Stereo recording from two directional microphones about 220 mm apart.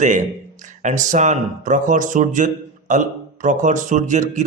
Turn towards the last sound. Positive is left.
turn(degrees=-35)  # may be behind; listen again after turning